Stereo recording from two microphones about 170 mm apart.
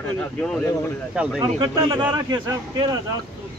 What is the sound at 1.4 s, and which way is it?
A man's voice, 25° right (ahead or behind).